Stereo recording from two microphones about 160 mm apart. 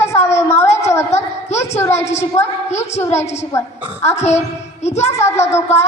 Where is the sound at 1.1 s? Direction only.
45° left (ahead or behind).